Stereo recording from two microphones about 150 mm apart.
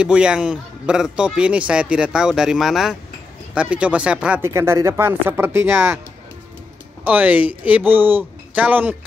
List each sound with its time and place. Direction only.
0.0 s a man's voice: 5° right (ahead or behind)
4.5 s speech: 20° right (ahead or behind)
7.1 s speech: 10° right (ahead or behind)